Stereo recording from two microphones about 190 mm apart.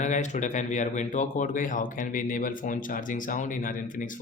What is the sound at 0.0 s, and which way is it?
Speech, 40° left (ahead or behind).